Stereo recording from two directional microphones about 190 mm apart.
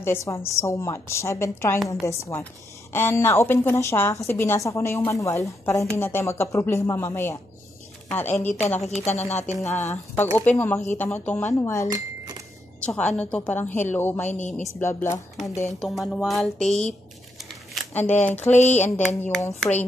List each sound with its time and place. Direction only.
0.0 s a woman's voice: 15° left (ahead or behind)
8.5 s a woman's voice: 35° left (ahead or behind)
9.6 s a woman's voice: 15° left (ahead or behind)
11.9 s a sound: 20° right (ahead or behind)
12.8 s a woman's voice: 5° left (ahead or behind)
14.2 s a woman's voice: 40° left (ahead or behind)
14.8 s a woman's voice: 15° left (ahead or behind)
15.8 s speech: centre (ahead or behind)
17.8 s a sound: centre (ahead or behind)
18.6 s a woman's voice: 35° left (ahead or behind)
19.1 s a woman's voice: 10° left (ahead or behind)